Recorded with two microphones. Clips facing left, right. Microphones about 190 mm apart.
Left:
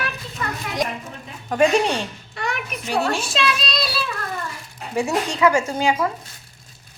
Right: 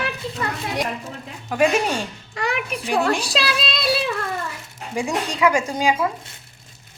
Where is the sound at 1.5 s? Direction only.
5° right (ahead or behind).